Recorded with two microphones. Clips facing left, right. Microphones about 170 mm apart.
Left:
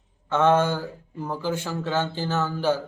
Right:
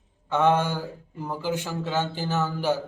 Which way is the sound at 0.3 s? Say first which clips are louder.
Left 2 dB; 15° right (ahead or behind).